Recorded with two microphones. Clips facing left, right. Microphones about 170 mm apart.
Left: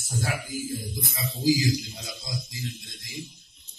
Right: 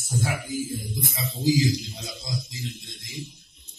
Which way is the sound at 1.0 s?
20° right (ahead or behind).